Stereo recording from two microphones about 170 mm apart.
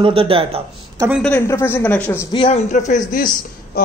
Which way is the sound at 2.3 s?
30° left (ahead or behind).